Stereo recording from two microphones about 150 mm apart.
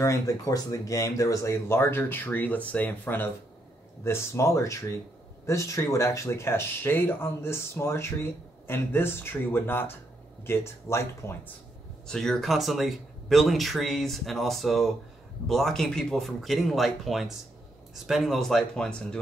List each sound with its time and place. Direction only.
0.0 s speech: 20° left (ahead or behind)
12.1 s speech: centre (ahead or behind)